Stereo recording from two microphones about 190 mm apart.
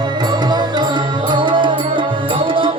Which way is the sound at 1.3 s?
25° right (ahead or behind).